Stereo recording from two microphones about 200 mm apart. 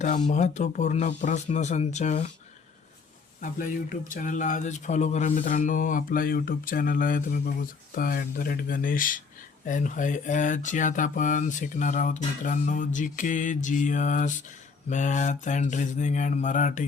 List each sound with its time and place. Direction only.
0.3 s speech: 35° left (ahead or behind)
3.4 s speech: 40° left (ahead or behind)